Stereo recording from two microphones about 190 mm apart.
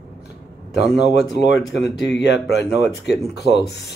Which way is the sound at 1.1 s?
65° left (ahead or behind).